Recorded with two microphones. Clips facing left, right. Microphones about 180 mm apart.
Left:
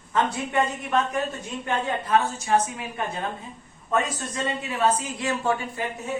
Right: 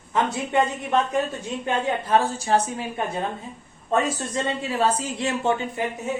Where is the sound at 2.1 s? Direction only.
30° right (ahead or behind).